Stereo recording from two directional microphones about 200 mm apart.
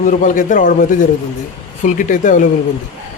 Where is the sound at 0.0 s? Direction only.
40° left (ahead or behind).